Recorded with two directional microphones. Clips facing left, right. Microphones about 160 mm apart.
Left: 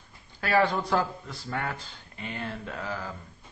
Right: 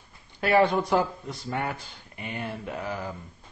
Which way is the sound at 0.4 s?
20° right (ahead or behind).